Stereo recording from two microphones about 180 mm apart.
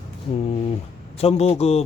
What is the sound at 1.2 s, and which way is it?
Speech, 35° left (ahead or behind).